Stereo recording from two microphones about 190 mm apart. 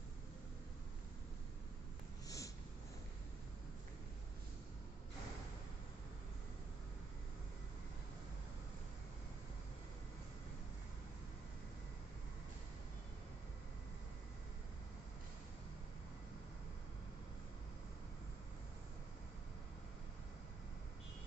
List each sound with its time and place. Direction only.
2.2 s snort: 15° left (ahead or behind)